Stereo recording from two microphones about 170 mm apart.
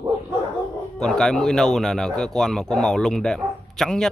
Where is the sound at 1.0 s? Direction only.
5° left (ahead or behind).